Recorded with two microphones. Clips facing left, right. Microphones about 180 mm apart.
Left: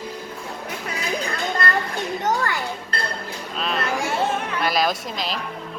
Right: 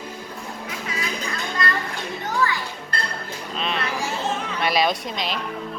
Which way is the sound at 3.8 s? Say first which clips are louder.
Left 3 dB; 55° left (ahead or behind).